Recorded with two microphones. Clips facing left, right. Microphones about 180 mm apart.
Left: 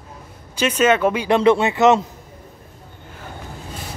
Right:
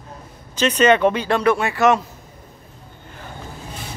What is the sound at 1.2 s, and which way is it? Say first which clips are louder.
Speech: left 3 dB; 20° left (ahead or behind).